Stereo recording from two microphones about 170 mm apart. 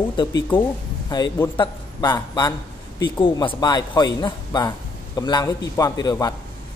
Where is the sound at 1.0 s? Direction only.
25° left (ahead or behind).